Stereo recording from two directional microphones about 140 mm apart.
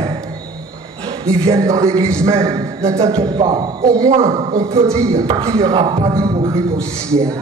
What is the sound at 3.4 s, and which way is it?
Speech, 25° right (ahead or behind).